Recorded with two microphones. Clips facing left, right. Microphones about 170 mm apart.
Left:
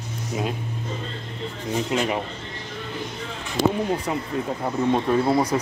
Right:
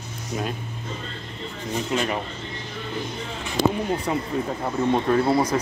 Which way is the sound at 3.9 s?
10° left (ahead or behind).